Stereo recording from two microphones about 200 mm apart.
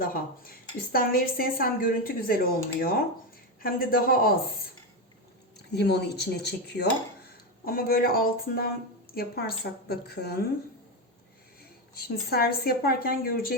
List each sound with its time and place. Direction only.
0.0 s a woman's voice: 45° left (ahead or behind)
5.7 s a woman's voice: 55° left (ahead or behind)
11.9 s a woman's voice: 50° left (ahead or behind)